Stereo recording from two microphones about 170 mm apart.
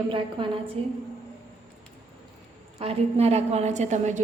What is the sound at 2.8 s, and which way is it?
A woman's voice, 35° right (ahead or behind).